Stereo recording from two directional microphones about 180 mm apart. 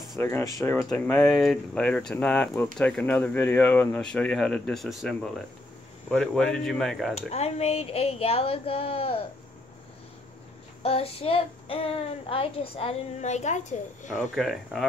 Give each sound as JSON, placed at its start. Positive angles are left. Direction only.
{"t": 0.2, "sound": "speech", "side_deg": 15}
{"t": 7.2, "sound": "child singing", "side_deg": 35}
{"t": 10.8, "sound": "child singing", "side_deg": 35}
{"t": 14.1, "sound": "speech", "side_deg": 0}